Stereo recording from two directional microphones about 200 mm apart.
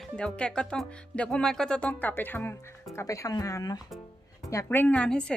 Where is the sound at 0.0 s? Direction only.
5° left (ahead or behind).